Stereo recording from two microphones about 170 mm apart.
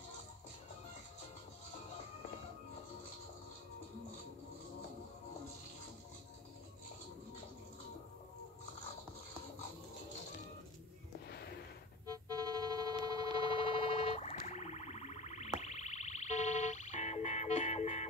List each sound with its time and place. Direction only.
11.2 s a sound: 70° left (ahead or behind)
12.1 s music: 20° right (ahead or behind)
13.5 s siren: 30° left (ahead or behind)
15.6 s music: 40° left (ahead or behind)